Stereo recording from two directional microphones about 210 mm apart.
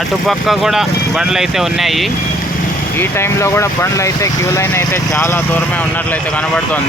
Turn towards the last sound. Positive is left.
turn(degrees=10)  # may be behind; listen again after turning